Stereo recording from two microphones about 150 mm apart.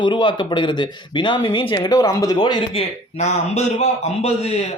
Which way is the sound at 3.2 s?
50° left (ahead or behind).